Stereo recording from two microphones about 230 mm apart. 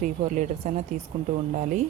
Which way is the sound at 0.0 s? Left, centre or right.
Right.